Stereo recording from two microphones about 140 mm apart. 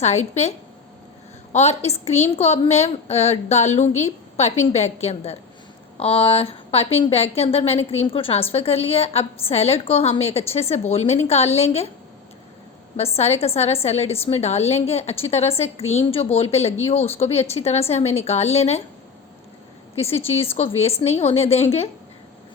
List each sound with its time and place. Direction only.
0.0 s a woman's voice: 55° left (ahead or behind)
1.5 s a woman's voice: 50° left (ahead or behind)
13.0 s a woman's voice: 45° left (ahead or behind)
20.0 s a woman's voice: 45° left (ahead or behind)